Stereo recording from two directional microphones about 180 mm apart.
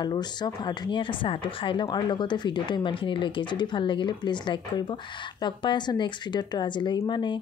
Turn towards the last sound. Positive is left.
turn(degrees=25)  # may be behind; listen again after turning